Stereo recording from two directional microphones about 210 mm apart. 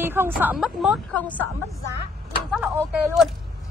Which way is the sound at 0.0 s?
10° right (ahead or behind).